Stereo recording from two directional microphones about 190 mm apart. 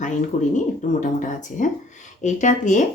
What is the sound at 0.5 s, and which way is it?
Speech, 40° left (ahead or behind).